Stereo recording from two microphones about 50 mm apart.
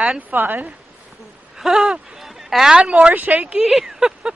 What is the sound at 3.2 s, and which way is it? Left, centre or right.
Speech, right.